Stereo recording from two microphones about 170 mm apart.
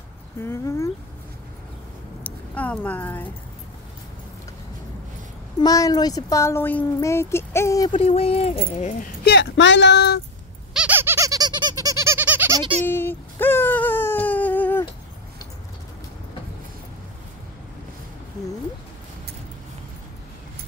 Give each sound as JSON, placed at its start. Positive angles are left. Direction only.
{"t": 0.4, "sound": "speech", "side_deg": 15}
{"t": 2.2, "sound": "speech", "side_deg": 10}
{"t": 5.6, "sound": "speech", "side_deg": 20}
{"t": 7.9, "sound": "speech", "side_deg": 35}
{"t": 9.2, "sound": "speech", "side_deg": 85}
{"t": 10.7, "sound": "squeak", "side_deg": -10}
{"t": 12.8, "sound": "a sound", "side_deg": 10}